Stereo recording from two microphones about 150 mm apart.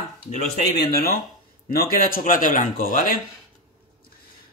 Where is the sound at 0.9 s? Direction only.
85° left.